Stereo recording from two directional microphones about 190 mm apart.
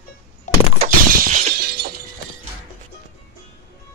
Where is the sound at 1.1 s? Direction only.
50° right (ahead or behind).